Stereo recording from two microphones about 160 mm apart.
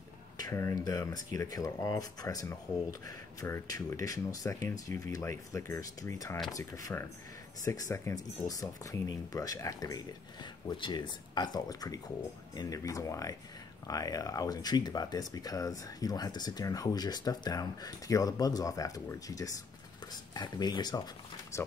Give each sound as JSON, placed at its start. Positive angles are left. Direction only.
{"t": 0.4, "sound": "speech", "side_deg": 20}